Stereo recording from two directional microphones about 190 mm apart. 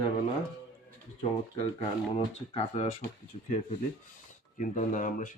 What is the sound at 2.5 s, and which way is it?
Speech, 35° left (ahead or behind).